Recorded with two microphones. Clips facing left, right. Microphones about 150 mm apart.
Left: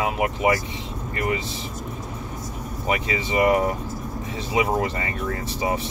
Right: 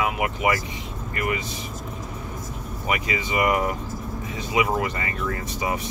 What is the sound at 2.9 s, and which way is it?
Speech, 30° left (ahead or behind).